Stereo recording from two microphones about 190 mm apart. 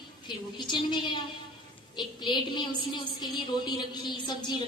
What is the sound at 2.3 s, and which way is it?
A woman's voice, 25° left (ahead or behind).